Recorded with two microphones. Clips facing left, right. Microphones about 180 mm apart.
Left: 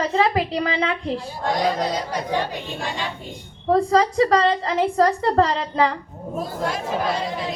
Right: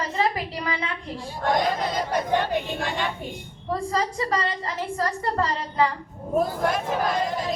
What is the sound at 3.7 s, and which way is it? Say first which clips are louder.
A woman's voice: left 9 dB; 70° left (ahead or behind).